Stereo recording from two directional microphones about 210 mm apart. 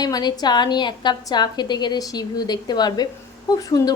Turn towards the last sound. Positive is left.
turn(degrees=15)  # may be behind; listen again after turning